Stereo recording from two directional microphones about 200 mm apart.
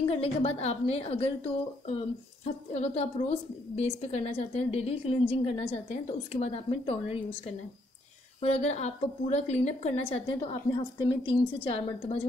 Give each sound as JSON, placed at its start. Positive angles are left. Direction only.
{"t": 0.1, "sound": "a woman's voice", "side_deg": 30}
{"t": 8.4, "sound": "a woman's voice", "side_deg": 30}